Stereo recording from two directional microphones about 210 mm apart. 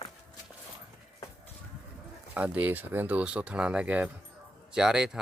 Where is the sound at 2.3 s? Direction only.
5° right (ahead or behind).